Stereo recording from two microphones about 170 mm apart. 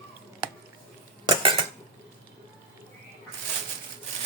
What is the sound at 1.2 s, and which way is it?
Cutlery, 25° right (ahead or behind).